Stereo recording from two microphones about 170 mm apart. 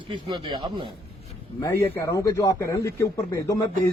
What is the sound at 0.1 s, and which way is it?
Speech, 30° right (ahead or behind).